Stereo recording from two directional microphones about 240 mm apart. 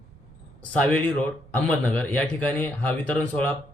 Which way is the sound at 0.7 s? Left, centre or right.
Centre.